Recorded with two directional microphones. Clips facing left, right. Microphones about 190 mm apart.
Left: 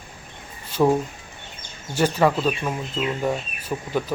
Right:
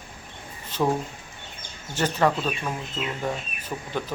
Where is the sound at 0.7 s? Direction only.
10° left (ahead or behind).